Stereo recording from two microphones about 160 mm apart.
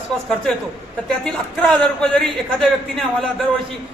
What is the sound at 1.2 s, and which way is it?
A man's voice, 5° left (ahead or behind).